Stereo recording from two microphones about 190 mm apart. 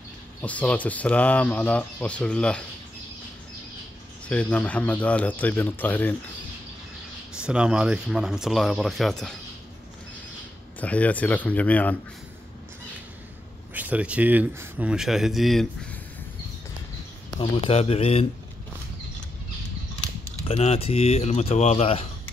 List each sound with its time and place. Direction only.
0.4 s speech: 5° left (ahead or behind)
4.3 s speech: 5° left (ahead or behind)
7.3 s speech: 5° right (ahead or behind)
10.8 s speech: 5° left (ahead or behind)
13.7 s speech: 10° right (ahead or behind)
17.4 s speech: 30° left (ahead or behind)
20.4 s speech: 35° left (ahead or behind)